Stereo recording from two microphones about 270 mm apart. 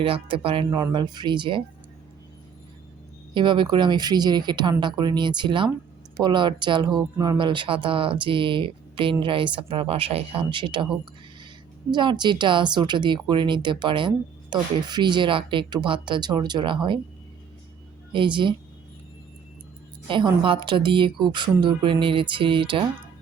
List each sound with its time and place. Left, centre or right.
0.0 s speech: centre
3.3 s speech: centre
11.9 s speech: centre
18.1 s speech: centre
20.1 s speech: centre